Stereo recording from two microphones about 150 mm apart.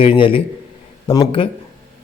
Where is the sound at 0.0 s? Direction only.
35° left (ahead or behind).